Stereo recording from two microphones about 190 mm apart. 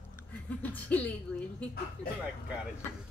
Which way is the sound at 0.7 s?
10° left (ahead or behind).